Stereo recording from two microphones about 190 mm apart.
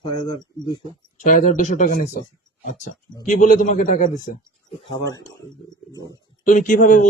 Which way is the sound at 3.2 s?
40° left (ahead or behind).